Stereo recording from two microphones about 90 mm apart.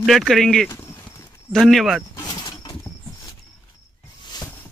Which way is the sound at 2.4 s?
60° left (ahead or behind).